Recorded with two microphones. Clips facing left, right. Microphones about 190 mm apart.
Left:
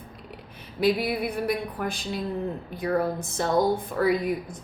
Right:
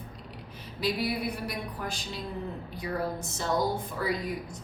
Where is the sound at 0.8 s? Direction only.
55° left (ahead or behind).